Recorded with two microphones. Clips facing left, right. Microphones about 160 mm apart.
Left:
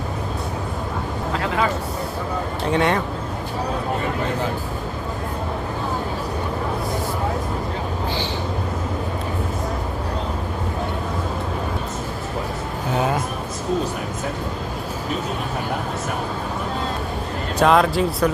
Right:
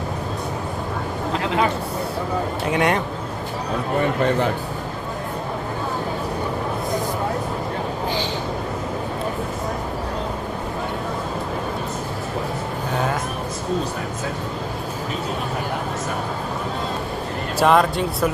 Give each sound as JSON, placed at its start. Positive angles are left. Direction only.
{"t": 2.7, "sound": "a man's voice", "side_deg": -15}
{"t": 17.6, "sound": "speech", "side_deg": 0}